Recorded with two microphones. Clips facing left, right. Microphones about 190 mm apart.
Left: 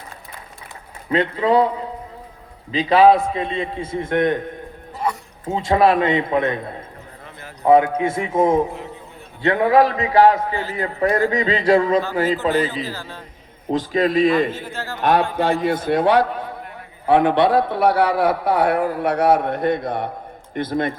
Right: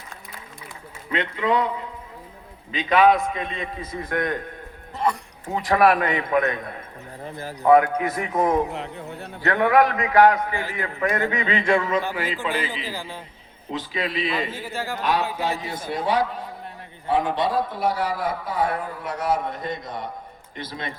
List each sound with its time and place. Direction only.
1.1 s speech: 35° left (ahead or behind)
2.7 s a man's voice: 30° left (ahead or behind)
5.5 s a man's voice: 25° left (ahead or behind)
7.3 s a man's voice: 35° right (ahead or behind)
7.6 s a man's voice: 25° left (ahead or behind)
8.7 s a sound: 70° right (ahead or behind)
9.4 s a man's voice: 25° left (ahead or behind)
12.8 s a man's voice: 15° right (ahead or behind)
13.7 s a man's voice: 45° left (ahead or behind)
14.5 s a man's voice: 10° right (ahead or behind)
15.3 s a man's voice: 50° left (ahead or behind)